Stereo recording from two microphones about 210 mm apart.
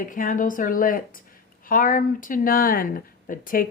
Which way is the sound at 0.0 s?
40° left (ahead or behind).